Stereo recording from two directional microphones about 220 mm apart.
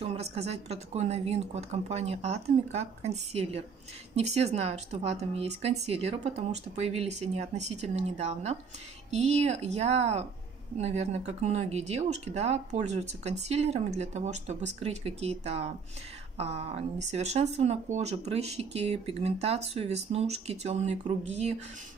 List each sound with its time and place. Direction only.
0.0 s speech: 30° right (ahead or behind)